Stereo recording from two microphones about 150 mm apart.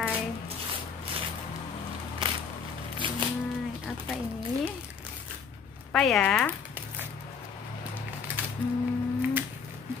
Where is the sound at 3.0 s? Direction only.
35° right (ahead or behind).